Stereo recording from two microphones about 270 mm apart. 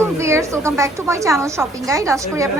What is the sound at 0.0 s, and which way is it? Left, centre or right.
A woman's voice, centre.